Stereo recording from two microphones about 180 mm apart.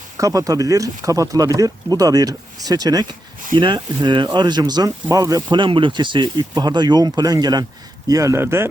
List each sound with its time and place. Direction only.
0.2 s speech: 20° right (ahead or behind)